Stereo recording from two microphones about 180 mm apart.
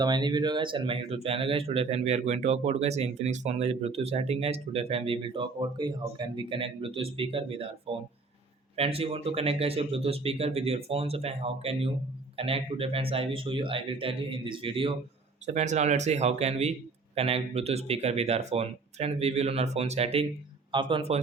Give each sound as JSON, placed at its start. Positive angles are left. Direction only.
{"t": 0.0, "sound": "speech", "side_deg": -25}
{"t": 8.7, "sound": "speech", "side_deg": -35}